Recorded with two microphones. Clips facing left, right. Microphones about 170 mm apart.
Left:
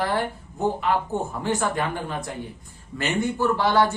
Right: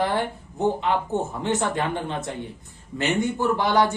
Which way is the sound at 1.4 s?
20° right (ahead or behind).